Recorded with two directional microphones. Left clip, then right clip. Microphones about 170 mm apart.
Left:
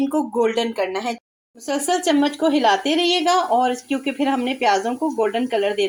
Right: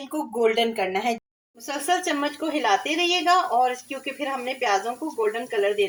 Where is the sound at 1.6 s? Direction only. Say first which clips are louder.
Left 4 dB; 40° left (ahead or behind).